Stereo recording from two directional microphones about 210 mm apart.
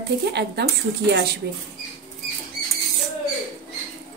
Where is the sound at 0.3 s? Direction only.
55° right (ahead or behind).